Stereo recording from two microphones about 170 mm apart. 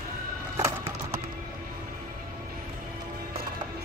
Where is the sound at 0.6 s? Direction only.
15° right (ahead or behind).